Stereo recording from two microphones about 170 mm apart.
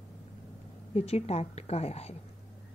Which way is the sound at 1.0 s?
40° left (ahead or behind).